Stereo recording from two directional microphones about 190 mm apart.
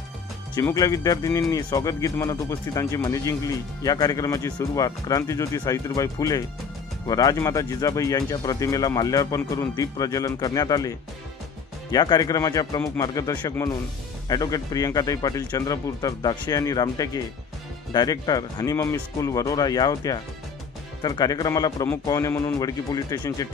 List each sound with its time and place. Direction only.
0.6 s speech: 15° left (ahead or behind)